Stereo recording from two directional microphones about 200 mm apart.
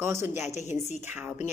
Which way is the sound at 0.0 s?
10° right (ahead or behind).